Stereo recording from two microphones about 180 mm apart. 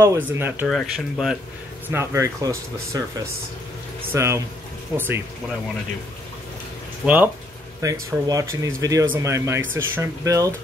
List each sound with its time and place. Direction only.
0.0 s speech: 15° right (ahead or behind)
0.7 s speech: centre (ahead or behind)
1.9 s speech: 15° right (ahead or behind)
4.1 s speech: 15° right (ahead or behind)
7.0 s speech: 5° right (ahead or behind)
7.8 s speech: 20° right (ahead or behind)